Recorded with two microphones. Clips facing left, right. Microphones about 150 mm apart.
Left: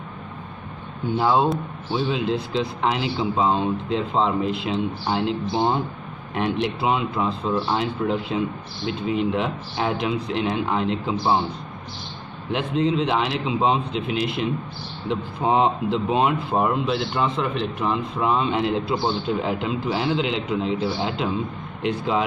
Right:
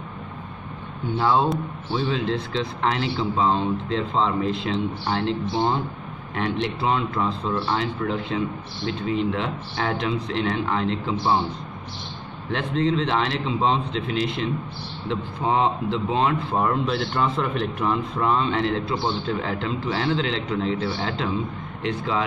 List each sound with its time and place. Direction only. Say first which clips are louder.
1.1 s speech: left 1 dB; 15° left (ahead or behind)
12.4 s speech: left 1 dB; 5° left (ahead or behind)